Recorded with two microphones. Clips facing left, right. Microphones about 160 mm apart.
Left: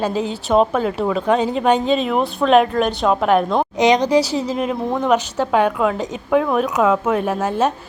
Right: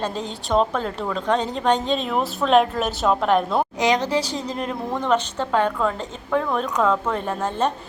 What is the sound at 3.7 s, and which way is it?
A woman's voice, 20° left (ahead or behind).